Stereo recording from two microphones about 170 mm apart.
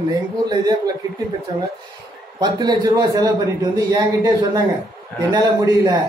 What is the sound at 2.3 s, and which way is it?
A man's voice, 25° right (ahead or behind).